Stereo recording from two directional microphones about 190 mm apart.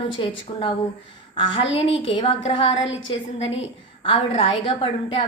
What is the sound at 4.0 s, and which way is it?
A woman's voice, 30° left (ahead or behind).